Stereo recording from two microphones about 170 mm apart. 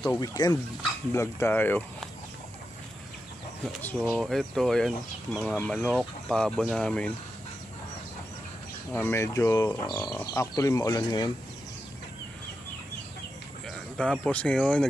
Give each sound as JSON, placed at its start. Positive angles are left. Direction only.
{"t": 0.1, "sound": "speech", "side_deg": 20}
{"t": 3.8, "sound": "speech", "side_deg": 5}
{"t": 8.9, "sound": "speech", "side_deg": 15}
{"t": 13.7, "sound": "a sound", "side_deg": 5}
{"t": 14.2, "sound": "speech", "side_deg": 5}